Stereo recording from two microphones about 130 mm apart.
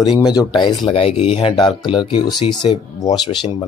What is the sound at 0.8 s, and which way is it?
Speech, 45° left (ahead or behind).